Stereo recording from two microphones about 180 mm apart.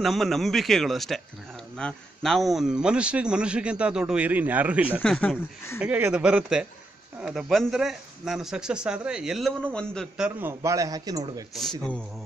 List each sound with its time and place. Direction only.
0.0 s speech: centre (ahead or behind)
5.0 s speech: 5° left (ahead or behind)
5.8 s a man's voice: 10° right (ahead or behind)
10.6 s a man's voice: 20° right (ahead or behind)